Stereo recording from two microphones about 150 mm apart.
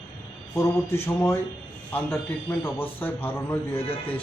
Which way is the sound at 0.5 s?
15° left (ahead or behind).